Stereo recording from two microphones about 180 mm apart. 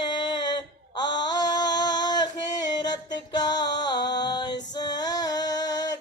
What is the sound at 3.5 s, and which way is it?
Music, 25° left (ahead or behind).